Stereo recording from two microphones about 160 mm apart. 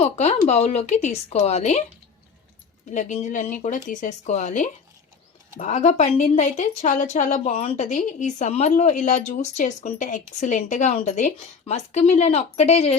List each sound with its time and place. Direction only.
0.0 s a woman's voice: 45° left (ahead or behind)
2.9 s a woman's voice: 50° left (ahead or behind)